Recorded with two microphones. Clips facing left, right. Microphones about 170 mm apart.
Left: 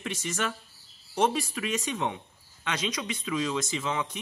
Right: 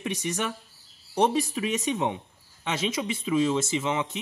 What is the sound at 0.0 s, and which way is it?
Speech, 15° right (ahead or behind).